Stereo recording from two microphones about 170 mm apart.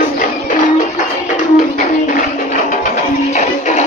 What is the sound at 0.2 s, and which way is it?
Music, 50° left (ahead or behind).